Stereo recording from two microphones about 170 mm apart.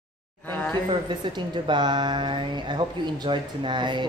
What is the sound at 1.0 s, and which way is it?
A woman's voice, 25° right (ahead or behind).